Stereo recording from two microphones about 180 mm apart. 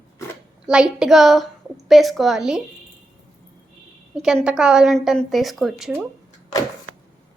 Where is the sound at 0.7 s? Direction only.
5° right (ahead or behind).